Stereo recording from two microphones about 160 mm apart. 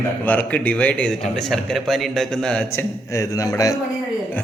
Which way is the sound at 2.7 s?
20° left (ahead or behind).